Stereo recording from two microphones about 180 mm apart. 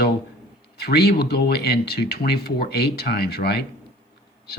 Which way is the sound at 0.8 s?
60° left (ahead or behind).